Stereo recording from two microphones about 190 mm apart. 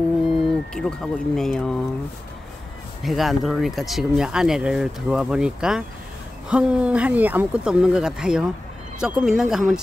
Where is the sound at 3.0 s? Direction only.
Centre (ahead or behind).